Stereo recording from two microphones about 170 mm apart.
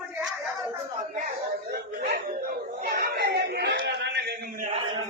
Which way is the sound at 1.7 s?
60° right (ahead or behind).